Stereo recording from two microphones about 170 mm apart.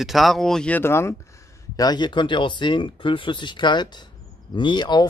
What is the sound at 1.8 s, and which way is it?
Speech, 25° left (ahead or behind).